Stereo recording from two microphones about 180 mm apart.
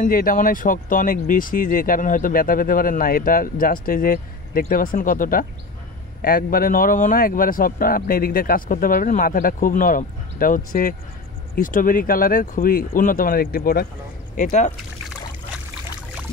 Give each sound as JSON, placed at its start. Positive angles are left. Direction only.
{"t": 0.0, "sound": "speech", "side_deg": 50}
{"t": 14.3, "sound": "speech", "side_deg": 45}